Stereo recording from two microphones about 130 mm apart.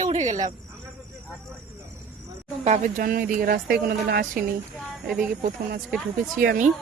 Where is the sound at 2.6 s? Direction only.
70° right (ahead or behind); by 3.6 s 90° right.